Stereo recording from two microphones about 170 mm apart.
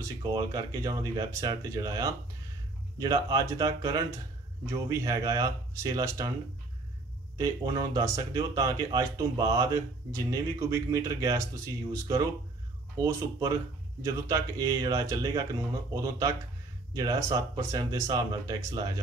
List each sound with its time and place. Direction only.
0.0 s speech: 20° right (ahead or behind)
7.3 s speech: 20° right (ahead or behind)